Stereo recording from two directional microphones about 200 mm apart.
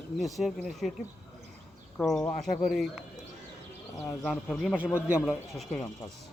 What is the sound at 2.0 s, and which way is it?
Speech, 5° left (ahead or behind).